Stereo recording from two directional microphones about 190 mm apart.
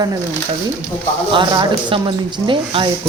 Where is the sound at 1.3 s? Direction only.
25° right (ahead or behind).